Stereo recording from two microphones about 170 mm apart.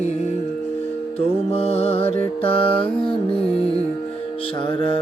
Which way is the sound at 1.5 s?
35° left (ahead or behind).